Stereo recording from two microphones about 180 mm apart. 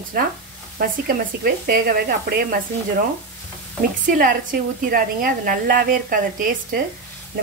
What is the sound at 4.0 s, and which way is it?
A woman's voice, 50° right (ahead or behind).